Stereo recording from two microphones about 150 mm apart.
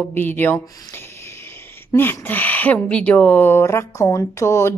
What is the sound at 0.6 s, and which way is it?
Speech, 25° left (ahead or behind).